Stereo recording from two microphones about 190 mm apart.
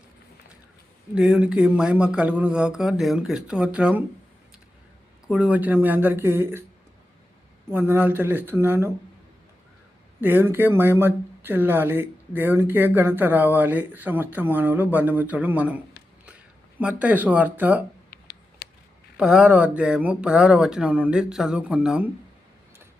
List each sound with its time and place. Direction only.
1.1 s speech: 5° right (ahead or behind)
5.3 s speech: 5° right (ahead or behind)
7.7 s speech: 10° right (ahead or behind)
10.2 s speech: 10° right (ahead or behind)
16.8 s speech: 10° right (ahead or behind)
18.1 s a sound: 55° left (ahead or behind)
19.1 s speech: 5° right (ahead or behind)